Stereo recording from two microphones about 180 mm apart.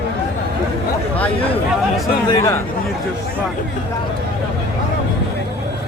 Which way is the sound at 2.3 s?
20° left (ahead or behind).